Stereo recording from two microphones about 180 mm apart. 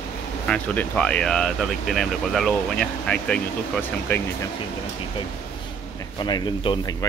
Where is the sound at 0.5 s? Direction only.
5° left (ahead or behind).